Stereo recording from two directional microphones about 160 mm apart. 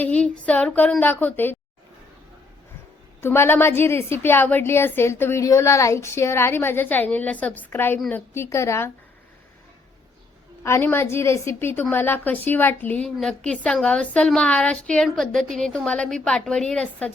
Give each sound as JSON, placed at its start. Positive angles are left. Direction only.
{"t": 0.0, "sound": "a woman's voice", "side_deg": 10}
{"t": 3.2, "sound": "a woman's voice", "side_deg": 15}
{"t": 10.6, "sound": "a woman's voice", "side_deg": 15}